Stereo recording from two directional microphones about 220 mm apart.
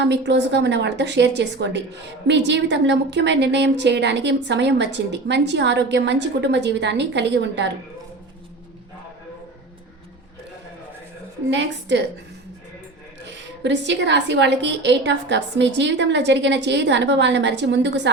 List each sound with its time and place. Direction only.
0.0 s a woman's voice: 50° right (ahead or behind)
11.5 s a woman's voice: 55° right (ahead or behind)
13.2 s a woman's voice: 55° right (ahead or behind)